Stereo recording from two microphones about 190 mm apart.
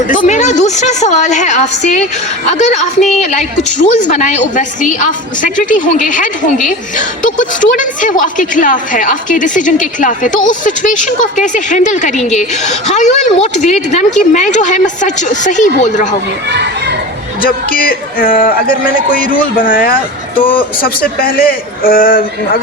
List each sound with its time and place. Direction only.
0.1 s a woman's voice: 40° left (ahead or behind)
3.9 s a woman's voice: 40° left (ahead or behind)
17.4 s a woman's voice: 50° left (ahead or behind)